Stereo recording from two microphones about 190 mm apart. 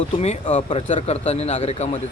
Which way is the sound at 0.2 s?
35° left (ahead or behind).